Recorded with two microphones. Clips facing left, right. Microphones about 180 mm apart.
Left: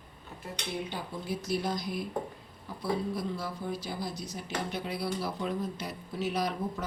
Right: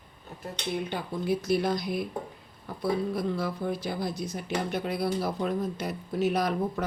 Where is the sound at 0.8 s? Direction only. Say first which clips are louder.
Right 7 dB; 60° right (ahead or behind).